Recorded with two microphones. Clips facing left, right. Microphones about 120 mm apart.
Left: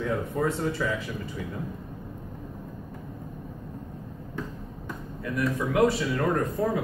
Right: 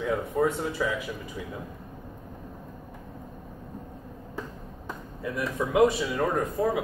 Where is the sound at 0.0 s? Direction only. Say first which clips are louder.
Right 2 dB; 5° right (ahead or behind).